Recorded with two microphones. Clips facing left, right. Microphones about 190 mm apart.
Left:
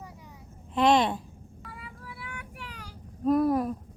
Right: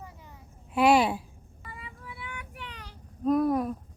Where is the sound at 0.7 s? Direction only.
10° right (ahead or behind).